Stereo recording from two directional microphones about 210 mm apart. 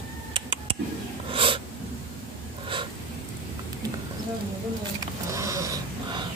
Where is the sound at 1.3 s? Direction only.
25° right (ahead or behind).